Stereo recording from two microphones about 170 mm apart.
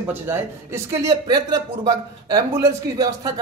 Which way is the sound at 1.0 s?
25° right (ahead or behind).